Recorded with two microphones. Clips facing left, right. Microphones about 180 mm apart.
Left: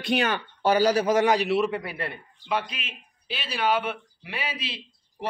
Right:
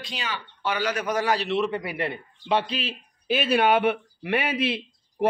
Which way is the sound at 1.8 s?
20° right (ahead or behind).